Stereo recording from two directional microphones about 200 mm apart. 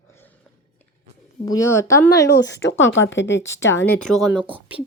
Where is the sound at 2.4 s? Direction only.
60° left (ahead or behind).